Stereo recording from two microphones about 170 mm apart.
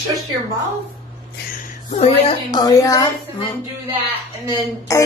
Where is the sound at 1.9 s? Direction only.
40° left (ahead or behind).